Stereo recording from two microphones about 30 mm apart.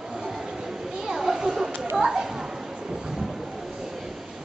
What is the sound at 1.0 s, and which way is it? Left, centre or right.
Children playing, centre.